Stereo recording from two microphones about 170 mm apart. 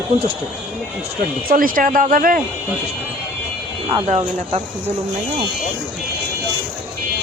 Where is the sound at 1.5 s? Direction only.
55° right (ahead or behind).